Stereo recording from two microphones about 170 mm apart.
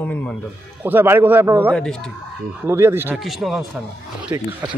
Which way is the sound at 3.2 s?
Centre (ahead or behind).